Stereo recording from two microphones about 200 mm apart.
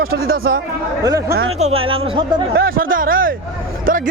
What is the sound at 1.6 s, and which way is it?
Speech, 30° right (ahead or behind).